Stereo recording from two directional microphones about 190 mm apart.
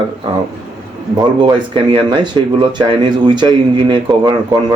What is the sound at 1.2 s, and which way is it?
Speech, 25° right (ahead or behind).